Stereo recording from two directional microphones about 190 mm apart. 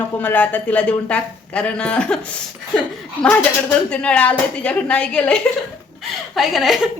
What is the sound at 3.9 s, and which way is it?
A woman's voice, 5° left (ahead or behind).